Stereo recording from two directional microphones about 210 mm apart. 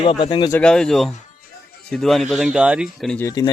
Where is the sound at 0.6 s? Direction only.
5° left (ahead or behind).